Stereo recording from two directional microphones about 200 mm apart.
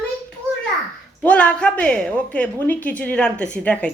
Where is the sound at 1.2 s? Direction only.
5° left (ahead or behind).